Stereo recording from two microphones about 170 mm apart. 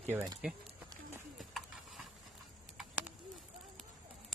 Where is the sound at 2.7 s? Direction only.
10° right (ahead or behind).